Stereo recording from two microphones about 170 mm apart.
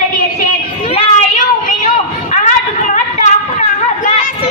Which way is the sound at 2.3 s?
45° left (ahead or behind).